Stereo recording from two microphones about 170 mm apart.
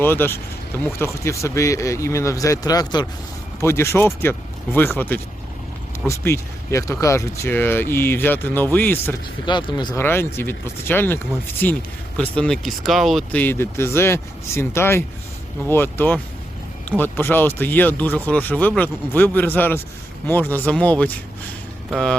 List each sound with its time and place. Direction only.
0.0 s speech: 10° left (ahead or behind)
9.5 s speech: 25° left (ahead or behind)
10.0 s speech: 15° left (ahead or behind)
13.4 s speech: 15° left (ahead or behind)